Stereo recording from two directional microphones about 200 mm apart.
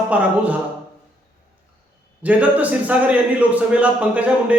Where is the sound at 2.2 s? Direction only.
5° right (ahead or behind).